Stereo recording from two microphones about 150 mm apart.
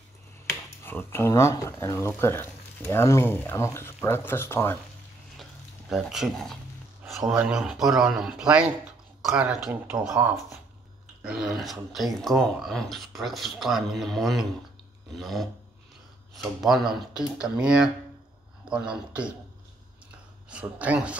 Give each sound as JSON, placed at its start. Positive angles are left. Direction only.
{"t": 0.8, "sound": "speech", "side_deg": 15}
{"t": 5.4, "sound": "a sound", "side_deg": 0}
{"t": 7.1, "sound": "speech", "side_deg": -5}
{"t": 11.2, "sound": "speech", "side_deg": 0}
{"t": 16.6, "sound": "speech", "side_deg": 0}
{"t": 20.4, "sound": "speech", "side_deg": -10}